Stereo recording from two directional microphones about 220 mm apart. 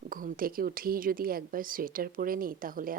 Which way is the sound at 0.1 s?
40° right (ahead or behind).